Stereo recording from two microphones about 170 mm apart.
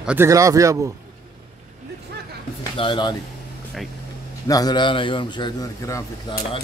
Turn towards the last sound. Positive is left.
turn(degrees=25)  # may be behind; listen again after turning